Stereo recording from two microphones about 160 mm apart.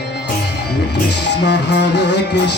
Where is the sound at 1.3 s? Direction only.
90° left.